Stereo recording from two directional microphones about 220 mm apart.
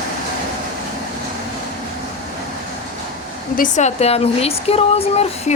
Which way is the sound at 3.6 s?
30° left (ahead or behind).